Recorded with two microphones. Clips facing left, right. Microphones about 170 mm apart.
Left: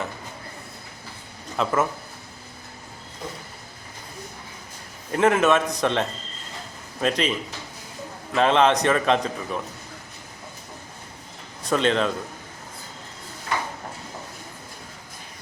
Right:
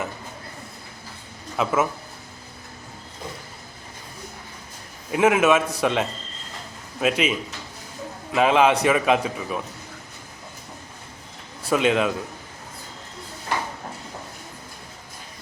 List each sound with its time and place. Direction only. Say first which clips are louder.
1.5 s a man's voice: right 1 dB; 5° right (ahead or behind)
5.1 s a man's voice: right 1 dB; 5° right (ahead or behind)
11.6 s speech: right 1 dB; 5° right (ahead or behind)